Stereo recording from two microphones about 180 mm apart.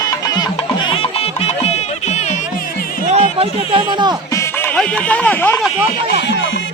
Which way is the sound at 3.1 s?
35° right (ahead or behind).